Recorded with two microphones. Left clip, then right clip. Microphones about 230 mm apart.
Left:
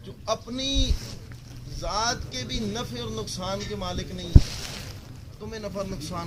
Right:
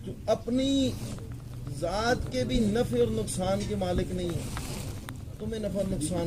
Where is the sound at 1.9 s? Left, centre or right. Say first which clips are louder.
Left 1 dB; centre.